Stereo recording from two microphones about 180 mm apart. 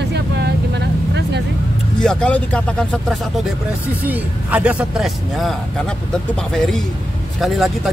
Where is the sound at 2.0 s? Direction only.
5° left (ahead or behind).